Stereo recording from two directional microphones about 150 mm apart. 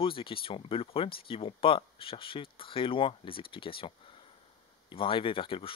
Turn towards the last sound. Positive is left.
turn(degrees=35)  # may be behind; listen again after turning